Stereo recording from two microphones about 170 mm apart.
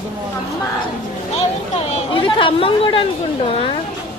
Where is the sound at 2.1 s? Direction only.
30° left (ahead or behind).